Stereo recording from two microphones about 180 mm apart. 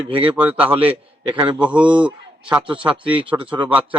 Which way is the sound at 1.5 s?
5° right (ahead or behind).